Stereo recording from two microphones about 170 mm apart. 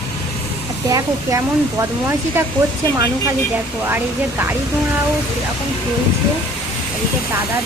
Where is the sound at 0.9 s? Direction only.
15° right (ahead or behind).